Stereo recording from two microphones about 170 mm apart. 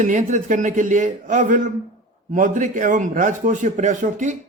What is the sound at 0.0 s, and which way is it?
Speech, 45° right (ahead or behind).